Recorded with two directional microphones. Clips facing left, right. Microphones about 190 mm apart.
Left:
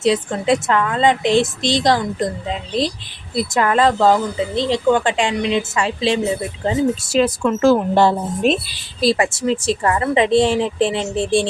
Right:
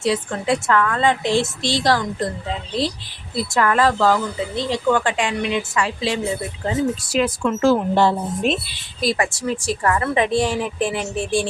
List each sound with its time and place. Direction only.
0.0 s a woman's voice: 20° left (ahead or behind)
7.6 s a woman's voice: 45° left (ahead or behind)
9.0 s a woman's voice: 25° left (ahead or behind)